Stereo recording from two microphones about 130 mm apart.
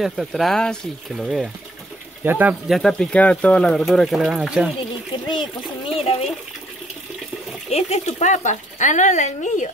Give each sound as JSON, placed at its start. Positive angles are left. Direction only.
{"t": 0.0, "sound": "speech", "side_deg": 0}
{"t": 2.2, "sound": "speech", "side_deg": -15}
{"t": 2.7, "sound": "speech", "side_deg": 5}
{"t": 5.1, "sound": "speech", "side_deg": 40}
{"t": 7.7, "sound": "speech", "side_deg": 55}